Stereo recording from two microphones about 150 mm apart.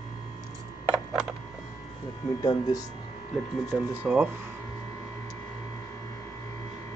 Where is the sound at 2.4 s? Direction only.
25° left (ahead or behind).